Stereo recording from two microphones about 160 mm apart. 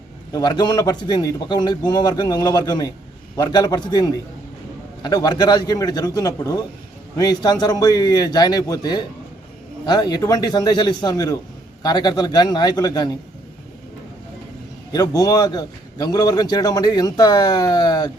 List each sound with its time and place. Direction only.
0.3 s a man's voice: 25° left (ahead or behind)
14.9 s a man's voice: 25° left (ahead or behind)